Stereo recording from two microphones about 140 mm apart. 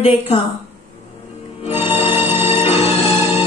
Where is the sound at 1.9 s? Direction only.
15° right (ahead or behind).